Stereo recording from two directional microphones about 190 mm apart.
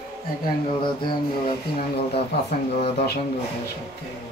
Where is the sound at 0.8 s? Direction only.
25° left (ahead or behind).